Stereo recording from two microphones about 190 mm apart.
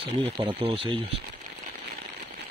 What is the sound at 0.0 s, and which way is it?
Speech, 30° right (ahead or behind).